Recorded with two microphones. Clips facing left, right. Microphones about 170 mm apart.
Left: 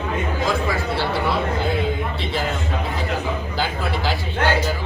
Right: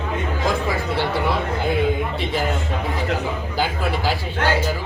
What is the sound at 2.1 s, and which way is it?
Speech, 15° right (ahead or behind).